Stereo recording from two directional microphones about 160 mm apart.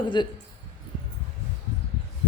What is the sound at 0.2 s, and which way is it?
Speech, 30° left (ahead or behind).